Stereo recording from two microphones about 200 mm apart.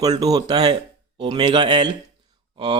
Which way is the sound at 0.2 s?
20° right (ahead or behind).